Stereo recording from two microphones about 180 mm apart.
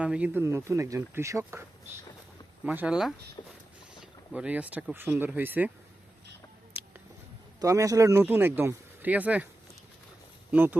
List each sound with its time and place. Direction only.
0.0 s speech: 5° right (ahead or behind)
2.6 s speech: 5° right (ahead or behind)
3.4 s a sound: 30° left (ahead or behind)
4.0 s speech: 5° right (ahead or behind)
7.6 s speech: 20° right (ahead or behind)
10.5 s speech: 10° right (ahead or behind)